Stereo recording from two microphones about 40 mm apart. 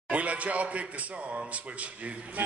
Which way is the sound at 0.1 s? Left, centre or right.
Right.